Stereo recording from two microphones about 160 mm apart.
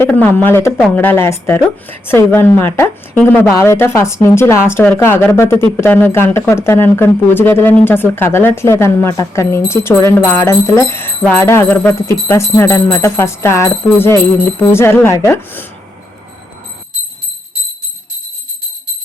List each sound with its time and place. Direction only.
0.0 s speech: 10° left (ahead or behind)